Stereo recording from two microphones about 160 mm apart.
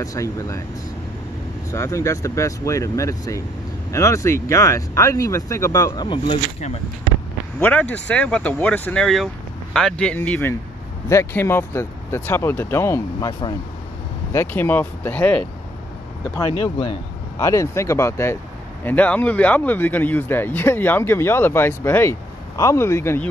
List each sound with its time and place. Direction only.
0.0 s speech: 20° left (ahead or behind)
1.7 s speech: 20° left (ahead or behind); by 6.8 s 35° left (ahead or behind)
7.6 s speech: 10° left (ahead or behind)
14.3 s speech: 15° left (ahead or behind)
16.3 s speech: 30° left (ahead or behind)
17.4 s speech: 20° left (ahead or behind)